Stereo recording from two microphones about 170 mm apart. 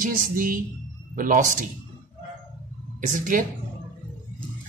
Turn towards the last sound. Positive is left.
turn(degrees=-50)  # may be behind; listen again after turning